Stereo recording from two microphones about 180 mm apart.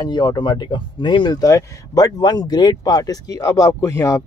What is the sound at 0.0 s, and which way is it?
Speech, 25° left (ahead or behind).